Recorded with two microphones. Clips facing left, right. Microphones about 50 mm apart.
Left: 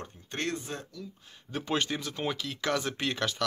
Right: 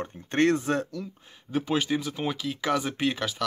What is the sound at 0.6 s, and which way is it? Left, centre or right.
Speech, right.